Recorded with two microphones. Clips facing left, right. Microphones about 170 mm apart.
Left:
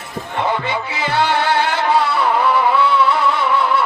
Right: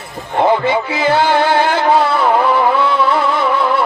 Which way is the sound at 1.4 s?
50° right (ahead or behind).